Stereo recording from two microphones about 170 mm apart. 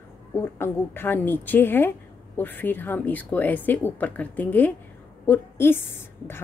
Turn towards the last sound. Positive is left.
turn(degrees=10)  # may be behind; listen again after turning